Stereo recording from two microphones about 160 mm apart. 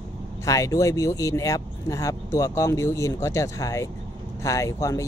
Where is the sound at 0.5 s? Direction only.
20° left (ahead or behind).